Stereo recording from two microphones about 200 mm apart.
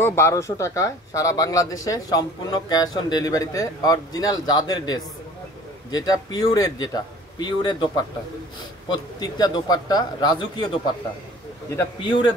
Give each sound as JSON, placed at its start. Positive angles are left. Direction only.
{"t": 0.0, "sound": "speech", "side_deg": 15}
{"t": 11.7, "sound": "speech", "side_deg": 20}